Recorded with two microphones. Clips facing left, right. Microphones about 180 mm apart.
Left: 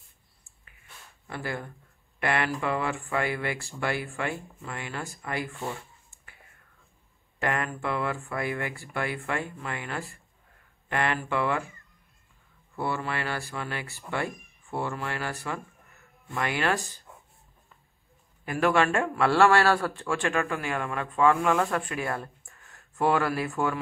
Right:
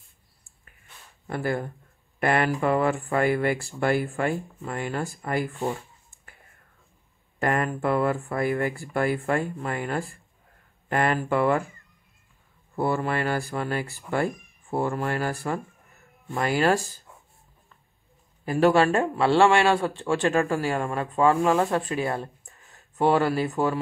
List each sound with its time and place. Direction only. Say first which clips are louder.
1.2 s speech: right 7 dB; 45° right (ahead or behind)
7.3 s speech: right 4 dB; 40° right (ahead or behind)
12.7 s speech: right 6 dB; 45° right (ahead or behind)
18.4 s speech: right 4 dB; 30° right (ahead or behind)